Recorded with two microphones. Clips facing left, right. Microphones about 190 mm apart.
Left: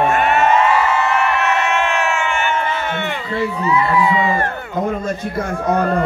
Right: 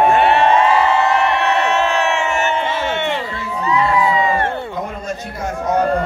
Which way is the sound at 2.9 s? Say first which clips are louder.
Right 3 dB; 20° right (ahead or behind).